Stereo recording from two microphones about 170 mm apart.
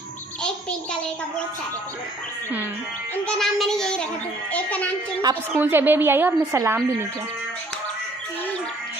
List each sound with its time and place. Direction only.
3.3 s a woman's voice: 5° left (ahead or behind)
5.3 s a woman's voice: 10° right (ahead or behind)